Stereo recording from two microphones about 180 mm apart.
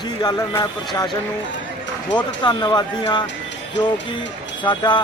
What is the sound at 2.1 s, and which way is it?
Speech, 25° left (ahead or behind).